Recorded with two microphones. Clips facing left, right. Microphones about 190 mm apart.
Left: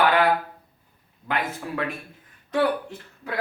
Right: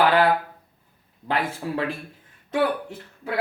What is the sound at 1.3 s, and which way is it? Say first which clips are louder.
Speech: right 2 dB; 30° right (ahead or behind).